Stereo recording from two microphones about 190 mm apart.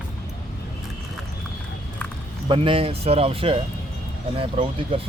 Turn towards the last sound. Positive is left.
turn(degrees=-30)  # may be behind; listen again after turning